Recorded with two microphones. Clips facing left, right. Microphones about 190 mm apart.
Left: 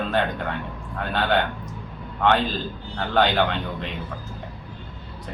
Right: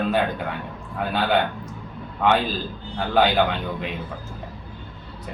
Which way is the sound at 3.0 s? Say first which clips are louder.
Right 1 dB; 5° right (ahead or behind).